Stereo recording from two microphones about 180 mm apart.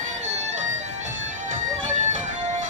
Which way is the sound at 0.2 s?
40° right (ahead or behind).